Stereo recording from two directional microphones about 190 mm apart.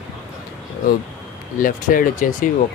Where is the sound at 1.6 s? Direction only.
45° left (ahead or behind).